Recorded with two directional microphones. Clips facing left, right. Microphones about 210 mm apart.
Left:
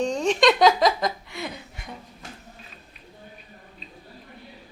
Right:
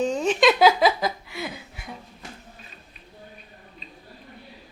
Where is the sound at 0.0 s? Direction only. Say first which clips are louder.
Even; 5° right (ahead or behind).